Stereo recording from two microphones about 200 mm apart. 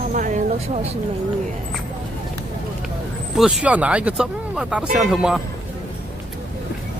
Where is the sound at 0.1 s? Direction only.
40° right (ahead or behind).